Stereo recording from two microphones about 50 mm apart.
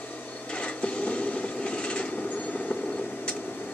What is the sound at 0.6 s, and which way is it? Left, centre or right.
Train, left.